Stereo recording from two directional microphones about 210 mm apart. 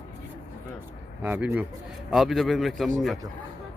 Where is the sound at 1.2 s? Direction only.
10° right (ahead or behind).